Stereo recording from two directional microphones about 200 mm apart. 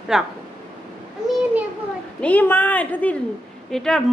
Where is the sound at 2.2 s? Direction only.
5° left (ahead or behind).